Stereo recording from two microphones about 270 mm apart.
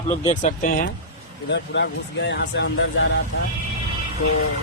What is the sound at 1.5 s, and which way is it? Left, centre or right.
Speech, left.